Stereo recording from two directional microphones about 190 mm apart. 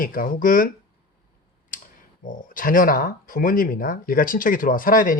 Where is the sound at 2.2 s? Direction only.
45° left (ahead or behind).